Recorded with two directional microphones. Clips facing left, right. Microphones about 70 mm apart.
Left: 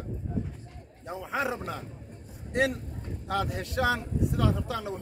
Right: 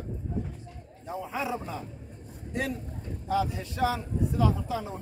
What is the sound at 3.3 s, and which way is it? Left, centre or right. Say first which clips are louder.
Speech: right 2 dB; left.